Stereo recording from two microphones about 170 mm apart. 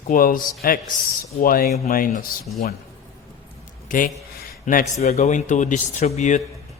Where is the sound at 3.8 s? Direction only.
55° left (ahead or behind).